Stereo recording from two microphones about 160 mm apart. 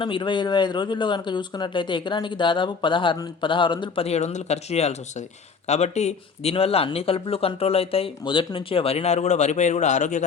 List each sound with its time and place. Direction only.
0.0 s speech: 30° left (ahead or behind); by 10.2 s 50° left (ahead or behind)